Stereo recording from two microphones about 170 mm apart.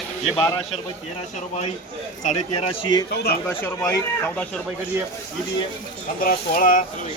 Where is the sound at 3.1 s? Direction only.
70° left (ahead or behind).